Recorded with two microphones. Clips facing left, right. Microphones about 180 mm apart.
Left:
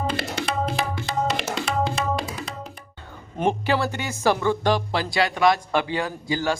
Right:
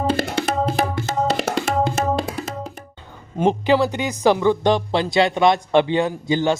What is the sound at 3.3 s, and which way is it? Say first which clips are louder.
Speech: right 5 dB; 15° right (ahead or behind).